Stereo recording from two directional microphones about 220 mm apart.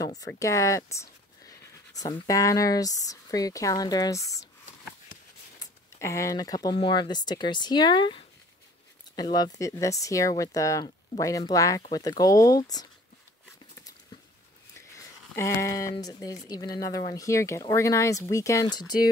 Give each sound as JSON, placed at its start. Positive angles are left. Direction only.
{"t": 0.0, "sound": "speech", "side_deg": 15}
{"t": 5.6, "sound": "speech", "side_deg": 15}
{"t": 15.3, "sound": "speech", "side_deg": 15}